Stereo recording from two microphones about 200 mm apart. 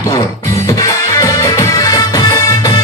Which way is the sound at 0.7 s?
15° left (ahead or behind).